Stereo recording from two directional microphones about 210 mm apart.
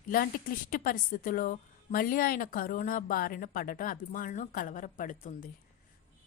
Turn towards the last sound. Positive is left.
turn(degrees=40)  # may be behind; listen again after turning